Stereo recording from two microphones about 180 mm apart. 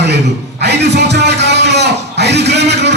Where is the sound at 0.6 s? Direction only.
70° right (ahead or behind).